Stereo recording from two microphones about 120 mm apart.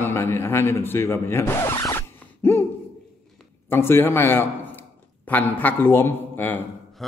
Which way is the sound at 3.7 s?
20° left (ahead or behind).